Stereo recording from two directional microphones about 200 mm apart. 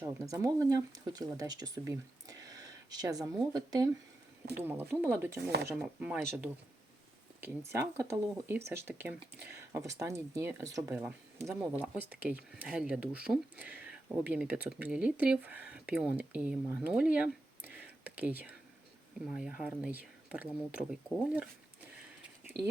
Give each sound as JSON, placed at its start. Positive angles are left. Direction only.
{"t": 0.0, "sound": "speech", "side_deg": -15}
{"t": 7.4, "sound": "speech", "side_deg": -15}
{"t": 17.7, "sound": "whispering", "side_deg": -10}
{"t": 19.3, "sound": "speech", "side_deg": -5}